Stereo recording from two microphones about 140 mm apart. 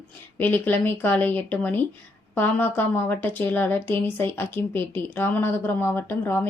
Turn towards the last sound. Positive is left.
turn(degrees=15)  # may be behind; listen again after turning